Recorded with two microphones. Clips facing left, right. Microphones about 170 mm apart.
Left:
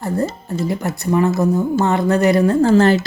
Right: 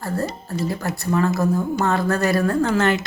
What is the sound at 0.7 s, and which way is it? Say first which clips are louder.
Speech: left 5 dB; 20° left (ahead or behind).